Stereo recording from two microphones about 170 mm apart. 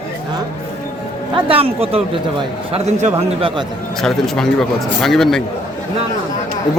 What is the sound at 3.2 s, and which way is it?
Speech, 30° right (ahead or behind).